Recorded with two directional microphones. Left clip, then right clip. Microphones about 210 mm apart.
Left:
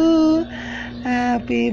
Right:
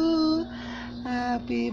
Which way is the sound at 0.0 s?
10° left (ahead or behind).